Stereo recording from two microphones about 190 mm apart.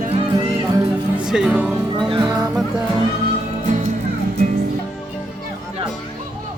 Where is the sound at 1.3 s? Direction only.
5° right (ahead or behind).